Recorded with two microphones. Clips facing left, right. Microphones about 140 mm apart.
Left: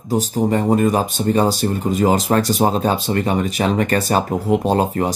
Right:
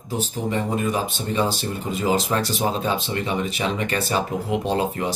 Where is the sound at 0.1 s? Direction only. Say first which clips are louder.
Left 7 dB; 40° left (ahead or behind).